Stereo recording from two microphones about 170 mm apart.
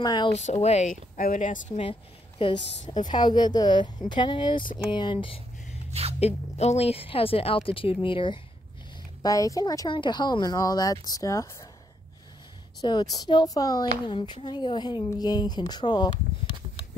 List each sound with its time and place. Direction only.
0.0 s speech: 25° left (ahead or behind)
0.3 s speech: 40° left (ahead or behind)
1.8 s speech: 30° left (ahead or behind)
5.9 s a sound: 35° right (ahead or behind)
6.1 s a woman's voice: 40° left (ahead or behind); by 11.4 s 20° left (ahead or behind)
12.8 s speech: 25° left (ahead or behind)